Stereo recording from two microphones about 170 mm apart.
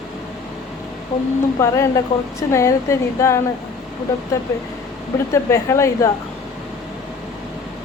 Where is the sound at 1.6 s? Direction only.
20° left (ahead or behind).